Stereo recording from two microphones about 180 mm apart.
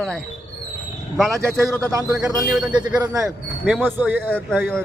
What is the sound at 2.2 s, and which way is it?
Speech, 5° right (ahead or behind).